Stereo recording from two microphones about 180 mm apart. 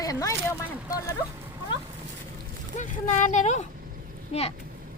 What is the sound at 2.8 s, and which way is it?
Speech, 40° left (ahead or behind).